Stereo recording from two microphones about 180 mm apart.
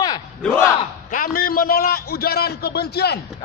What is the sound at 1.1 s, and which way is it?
A man's voice, 50° left (ahead or behind).